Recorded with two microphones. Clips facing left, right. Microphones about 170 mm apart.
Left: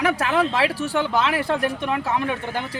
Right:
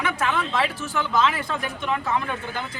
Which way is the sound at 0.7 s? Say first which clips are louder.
Left 4 dB; 30° left (ahead or behind).